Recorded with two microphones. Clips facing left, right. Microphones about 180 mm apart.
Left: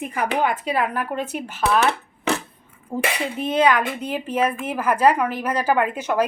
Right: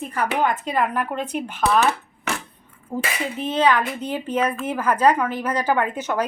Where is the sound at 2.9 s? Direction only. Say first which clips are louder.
Left 2 dB; 10° left (ahead or behind).